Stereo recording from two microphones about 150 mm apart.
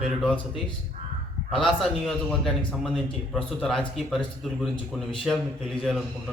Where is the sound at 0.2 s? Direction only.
5° left (ahead or behind).